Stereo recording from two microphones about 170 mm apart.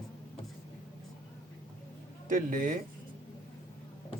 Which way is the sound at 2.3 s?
50° right (ahead or behind).